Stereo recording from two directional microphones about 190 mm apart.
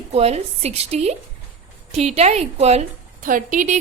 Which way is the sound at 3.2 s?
45° right (ahead or behind).